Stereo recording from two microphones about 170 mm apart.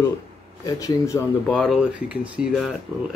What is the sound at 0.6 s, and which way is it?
Speech, 20° left (ahead or behind).